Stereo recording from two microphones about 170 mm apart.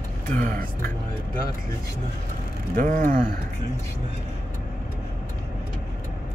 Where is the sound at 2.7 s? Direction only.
50° right (ahead or behind).